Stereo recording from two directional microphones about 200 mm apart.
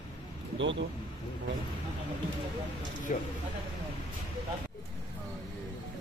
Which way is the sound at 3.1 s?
40° left (ahead or behind).